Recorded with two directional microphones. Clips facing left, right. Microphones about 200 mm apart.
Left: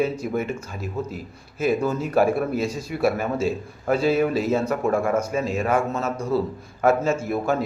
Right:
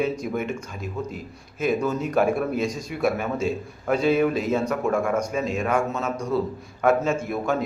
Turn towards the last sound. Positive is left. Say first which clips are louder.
# left 2 dB
turn(degrees=5)  # may be behind; listen again after turning